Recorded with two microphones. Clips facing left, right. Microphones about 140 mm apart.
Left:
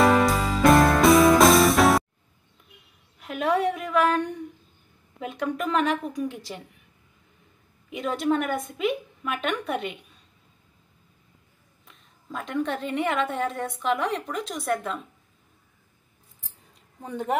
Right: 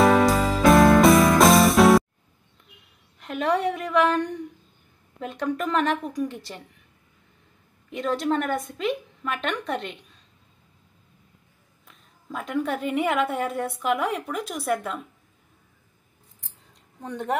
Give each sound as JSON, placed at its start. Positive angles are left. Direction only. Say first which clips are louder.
{"t": 0.0, "sound": "music", "louder": "right 2 dB", "side_deg": 0}
{"t": 3.2, "sound": "a woman's voice", "louder": "even", "side_deg": 0}
{"t": 7.9, "sound": "a woman's voice", "louder": "even", "side_deg": 0}
{"t": 11.8, "sound": "a woman's voice", "louder": "right 1 dB", "side_deg": 0}
{"t": 17.0, "sound": "a woman's voice", "louder": "even", "side_deg": 5}